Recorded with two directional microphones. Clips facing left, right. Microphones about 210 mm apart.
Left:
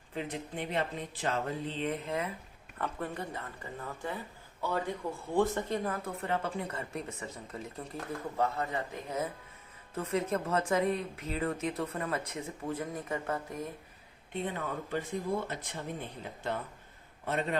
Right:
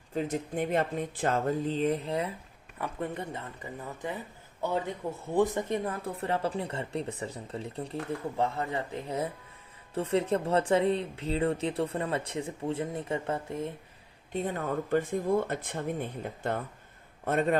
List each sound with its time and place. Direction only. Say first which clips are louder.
0.1 s speech: right 6 dB; 45° right (ahead or behind)
2.8 s speech: right 2 dB; 20° right (ahead or behind)
14.3 s speech: right 5 dB; 45° right (ahead or behind)